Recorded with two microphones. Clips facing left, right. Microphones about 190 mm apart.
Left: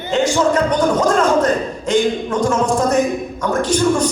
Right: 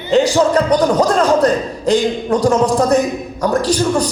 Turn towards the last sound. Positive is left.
turn(degrees=-35)  # may be behind; listen again after turning